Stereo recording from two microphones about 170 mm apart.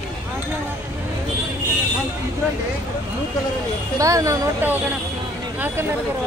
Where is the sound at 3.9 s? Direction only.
20° right (ahead or behind).